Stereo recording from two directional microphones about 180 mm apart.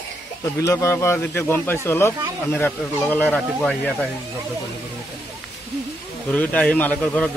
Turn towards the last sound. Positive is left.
turn(degrees=5)  # may be behind; listen again after turning